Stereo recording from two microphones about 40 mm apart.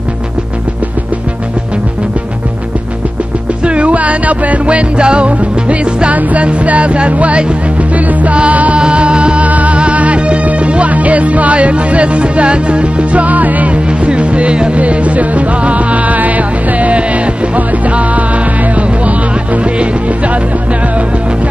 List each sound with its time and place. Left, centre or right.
3.6 s music: right
8.7 s music: right
9.5 s music: right
13.8 s music: right